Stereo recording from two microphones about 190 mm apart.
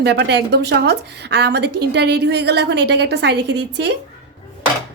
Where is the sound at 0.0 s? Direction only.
65° right (ahead or behind).